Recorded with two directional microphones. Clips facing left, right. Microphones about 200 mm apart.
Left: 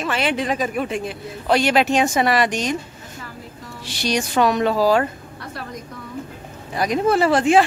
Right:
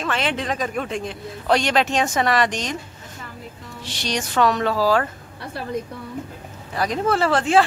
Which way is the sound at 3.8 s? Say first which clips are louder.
Left 4 dB; 10° left (ahead or behind).